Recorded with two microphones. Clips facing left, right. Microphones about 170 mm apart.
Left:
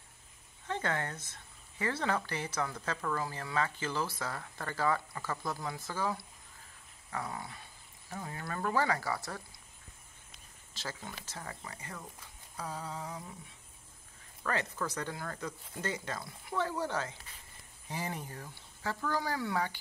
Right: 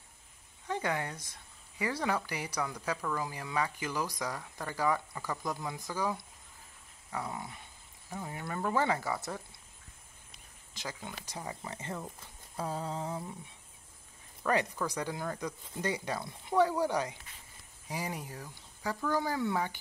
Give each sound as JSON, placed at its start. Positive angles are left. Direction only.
{"t": 0.7, "sound": "speech", "side_deg": -10}
{"t": 7.1, "sound": "dog", "side_deg": -20}
{"t": 8.3, "sound": "speech", "side_deg": -15}
{"t": 10.7, "sound": "speech", "side_deg": -15}
{"t": 14.4, "sound": "speech", "side_deg": -15}